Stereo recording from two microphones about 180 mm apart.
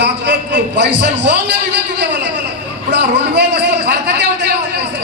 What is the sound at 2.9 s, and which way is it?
Speech, 75° right (ahead or behind).